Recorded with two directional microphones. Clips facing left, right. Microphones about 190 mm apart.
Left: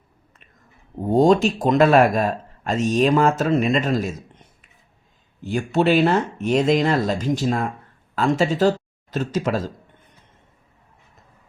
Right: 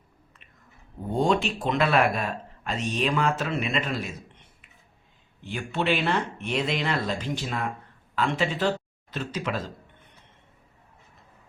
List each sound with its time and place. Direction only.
1.0 s speech: 40° left (ahead or behind)